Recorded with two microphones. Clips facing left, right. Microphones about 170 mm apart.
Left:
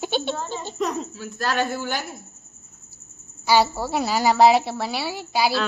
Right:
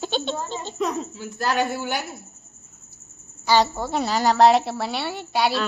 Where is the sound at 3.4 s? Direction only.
10° left (ahead or behind).